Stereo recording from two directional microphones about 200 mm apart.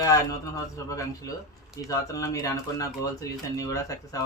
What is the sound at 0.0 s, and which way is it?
Speech, 15° left (ahead or behind).